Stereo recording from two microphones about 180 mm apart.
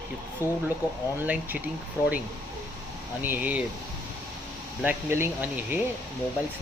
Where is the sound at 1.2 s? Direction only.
10° right (ahead or behind).